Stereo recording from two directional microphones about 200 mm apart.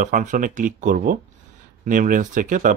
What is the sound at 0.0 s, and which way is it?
Speech, 40° right (ahead or behind).